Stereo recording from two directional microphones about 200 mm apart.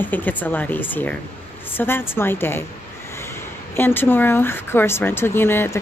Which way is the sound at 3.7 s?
10° left (ahead or behind).